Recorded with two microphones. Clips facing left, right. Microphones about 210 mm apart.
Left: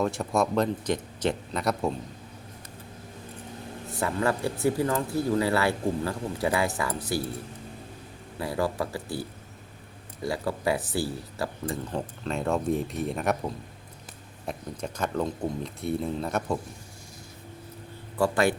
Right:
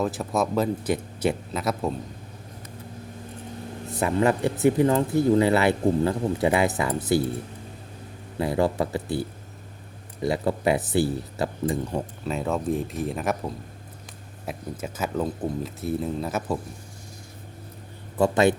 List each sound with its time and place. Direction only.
0.0 s speech: centre (ahead or behind)
4.0 s speech: 20° right (ahead or behind)
8.4 s speech: 20° right (ahead or behind)
10.2 s speech: 20° right (ahead or behind); by 16.6 s 5° right (ahead or behind)
18.2 s speech: 20° right (ahead or behind)